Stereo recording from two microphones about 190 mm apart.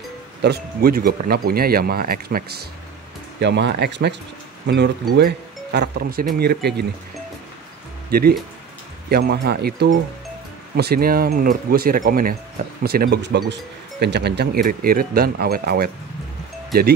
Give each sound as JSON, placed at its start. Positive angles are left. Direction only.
{"t": 0.4, "sound": "speech", "side_deg": -55}
{"t": 3.3, "sound": "speech", "side_deg": -65}
{"t": 8.1, "sound": "speech", "side_deg": -55}